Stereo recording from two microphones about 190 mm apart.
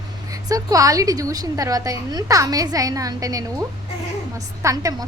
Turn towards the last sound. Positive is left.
turn(degrees=-20)  # may be behind; listen again after turning